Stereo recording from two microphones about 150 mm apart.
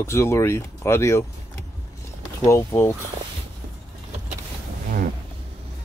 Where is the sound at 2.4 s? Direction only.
15° left (ahead or behind).